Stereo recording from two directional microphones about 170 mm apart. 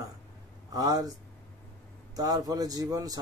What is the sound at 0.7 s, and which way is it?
Speech, 20° right (ahead or behind).